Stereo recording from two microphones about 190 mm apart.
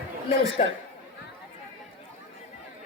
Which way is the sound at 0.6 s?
30° left (ahead or behind).